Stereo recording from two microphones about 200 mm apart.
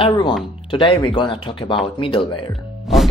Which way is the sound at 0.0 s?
25° left (ahead or behind).